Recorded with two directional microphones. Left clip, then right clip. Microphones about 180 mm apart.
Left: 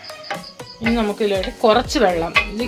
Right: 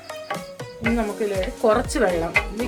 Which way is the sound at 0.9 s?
30° left (ahead or behind).